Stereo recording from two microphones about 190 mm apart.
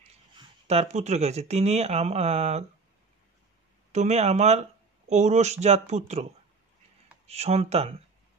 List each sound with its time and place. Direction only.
0.4 s speech: 35° right (ahead or behind)
3.9 s speech: 35° right (ahead or behind)
7.2 s speech: 35° right (ahead or behind)